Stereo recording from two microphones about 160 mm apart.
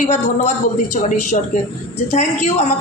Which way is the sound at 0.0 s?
50° left (ahead or behind).